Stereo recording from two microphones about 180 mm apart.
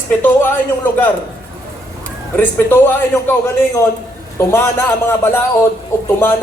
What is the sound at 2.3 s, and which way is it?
Speech, 10° left (ahead or behind).